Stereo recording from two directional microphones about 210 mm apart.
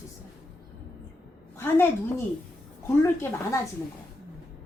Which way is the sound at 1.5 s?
10° left (ahead or behind).